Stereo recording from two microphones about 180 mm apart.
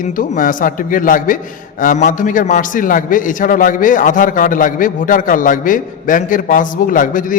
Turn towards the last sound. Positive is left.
turn(degrees=50)  # may be behind; listen again after turning